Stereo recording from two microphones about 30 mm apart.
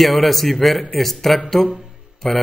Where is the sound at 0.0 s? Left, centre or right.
Centre.